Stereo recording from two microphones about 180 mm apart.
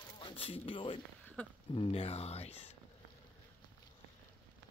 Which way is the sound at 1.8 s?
30° left (ahead or behind).